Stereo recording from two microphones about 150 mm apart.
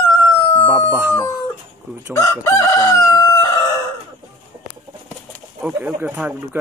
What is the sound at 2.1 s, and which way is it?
Chicken, 20° left (ahead or behind).